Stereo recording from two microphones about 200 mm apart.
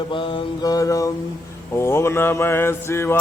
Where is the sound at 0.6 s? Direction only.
15° left (ahead or behind).